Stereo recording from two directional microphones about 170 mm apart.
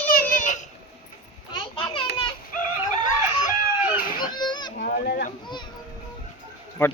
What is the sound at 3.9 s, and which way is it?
Children playing, 25° left (ahead or behind).